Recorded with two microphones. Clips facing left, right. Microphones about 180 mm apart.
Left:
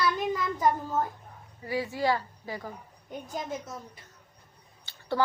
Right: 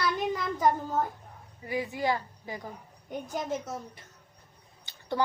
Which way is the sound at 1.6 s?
20° right (ahead or behind).